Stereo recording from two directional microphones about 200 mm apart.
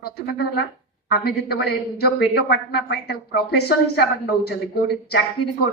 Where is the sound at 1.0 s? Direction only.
50° left (ahead or behind).